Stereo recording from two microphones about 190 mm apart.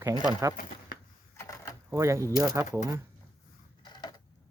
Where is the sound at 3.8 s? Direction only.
20° left (ahead or behind).